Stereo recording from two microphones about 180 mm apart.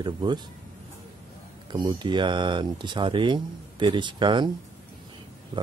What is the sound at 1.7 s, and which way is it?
Speech, 25° right (ahead or behind).